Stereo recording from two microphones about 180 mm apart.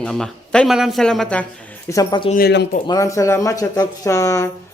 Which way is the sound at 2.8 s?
20° left (ahead or behind).